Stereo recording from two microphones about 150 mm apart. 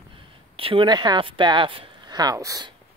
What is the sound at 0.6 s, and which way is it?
Speech, 35° right (ahead or behind).